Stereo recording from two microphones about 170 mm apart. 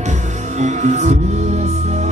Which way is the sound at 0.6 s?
45° right (ahead or behind).